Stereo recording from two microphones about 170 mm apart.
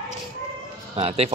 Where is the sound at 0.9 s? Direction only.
35° right (ahead or behind).